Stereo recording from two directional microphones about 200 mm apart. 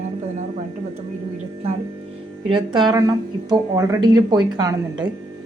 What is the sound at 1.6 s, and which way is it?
Speech, 30° right (ahead or behind).